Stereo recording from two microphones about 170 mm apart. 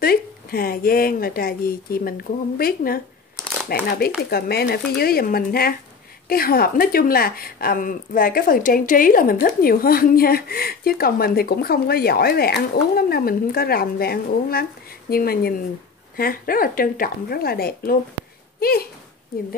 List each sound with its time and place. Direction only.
0.0 s a woman's voice: 60° left (ahead or behind)